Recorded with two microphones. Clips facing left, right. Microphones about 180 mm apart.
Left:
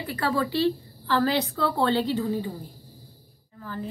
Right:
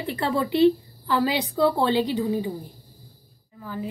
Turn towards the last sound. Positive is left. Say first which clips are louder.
# right 2 dB
turn(degrees=-10)  # may be behind; listen again after turning